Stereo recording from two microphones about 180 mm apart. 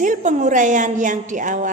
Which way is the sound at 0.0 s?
45° right (ahead or behind).